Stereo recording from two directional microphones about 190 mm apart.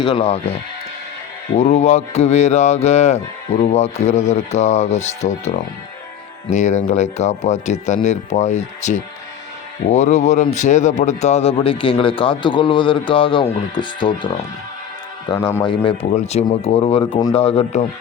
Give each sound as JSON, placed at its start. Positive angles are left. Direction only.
{"t": 0.0, "sound": "speech", "side_deg": 25}
{"t": 1.5, "sound": "speech", "side_deg": 35}
{"t": 15.4, "sound": "speech", "side_deg": 15}
{"t": 15.6, "sound": "speech", "side_deg": 25}